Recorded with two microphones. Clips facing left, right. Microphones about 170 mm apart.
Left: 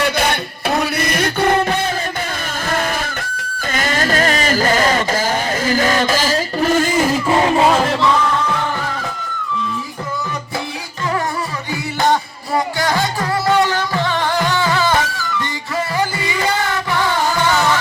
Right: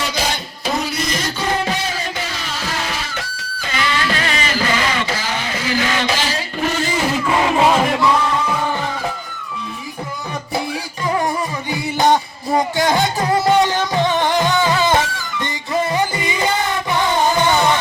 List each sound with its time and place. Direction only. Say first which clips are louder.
0.0 s music: left 5 dB; 60° left (ahead or behind)
7.7 s music: even; 5° right (ahead or behind)
12.5 s music: right 1 dB; 20° right (ahead or behind)